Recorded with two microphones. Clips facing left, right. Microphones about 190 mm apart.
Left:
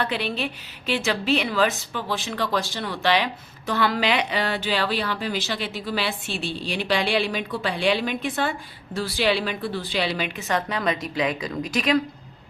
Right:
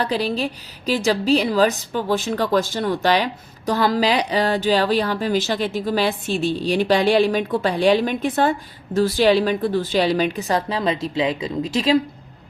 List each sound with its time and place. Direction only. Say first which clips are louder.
0.0 s a woman's voice: right 5 dB; 35° right (ahead or behind)